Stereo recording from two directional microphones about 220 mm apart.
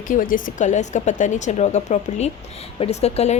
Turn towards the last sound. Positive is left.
turn(degrees=30)  # may be behind; listen again after turning